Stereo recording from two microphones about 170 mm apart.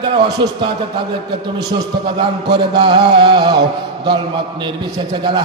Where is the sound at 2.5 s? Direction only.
30° right (ahead or behind).